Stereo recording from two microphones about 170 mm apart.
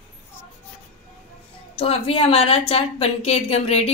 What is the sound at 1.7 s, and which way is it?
A woman's voice, 35° left (ahead or behind).